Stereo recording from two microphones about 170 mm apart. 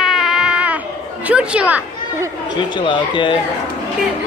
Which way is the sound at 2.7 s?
30° left (ahead or behind).